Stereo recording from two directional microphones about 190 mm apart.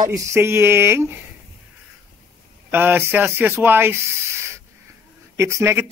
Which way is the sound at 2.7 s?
10° right (ahead or behind).